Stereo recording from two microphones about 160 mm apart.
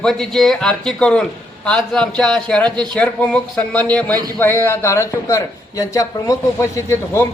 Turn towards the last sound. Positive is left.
turn(degrees=15)  # may be behind; listen again after turning